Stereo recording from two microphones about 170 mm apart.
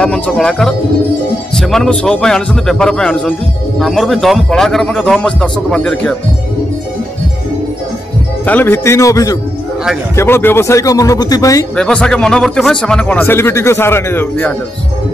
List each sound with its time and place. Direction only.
0.0 s a man's voice: 5° left (ahead or behind)
8.5 s speech: 10° left (ahead or behind)
11.7 s speech: 5° left (ahead or behind)